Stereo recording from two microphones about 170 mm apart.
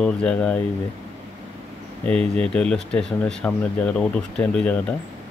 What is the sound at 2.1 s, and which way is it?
Speech, 5° left (ahead or behind).